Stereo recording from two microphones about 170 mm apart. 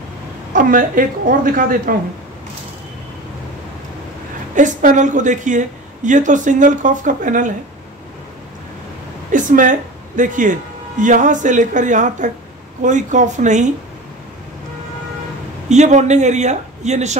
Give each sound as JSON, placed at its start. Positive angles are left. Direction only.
{"t": 0.5, "sound": "a woman's voice", "side_deg": -50}
{"t": 4.6, "sound": "a woman's voice", "side_deg": -45}
{"t": 9.3, "sound": "a woman's voice", "side_deg": -50}
{"t": 15.7, "sound": "a woman's voice", "side_deg": -45}